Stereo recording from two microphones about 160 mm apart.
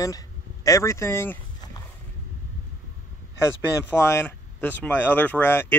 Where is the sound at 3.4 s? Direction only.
15° left (ahead or behind).